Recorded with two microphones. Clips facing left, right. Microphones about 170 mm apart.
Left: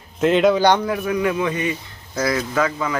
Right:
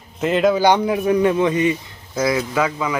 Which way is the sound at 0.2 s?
Centre (ahead or behind).